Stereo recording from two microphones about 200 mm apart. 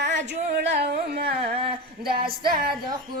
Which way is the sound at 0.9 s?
50° right (ahead or behind).